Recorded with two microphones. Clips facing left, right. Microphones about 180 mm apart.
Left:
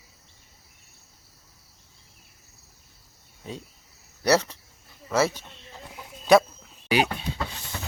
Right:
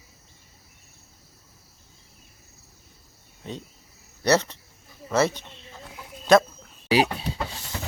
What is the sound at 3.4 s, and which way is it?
Cricket, 5° left (ahead or behind).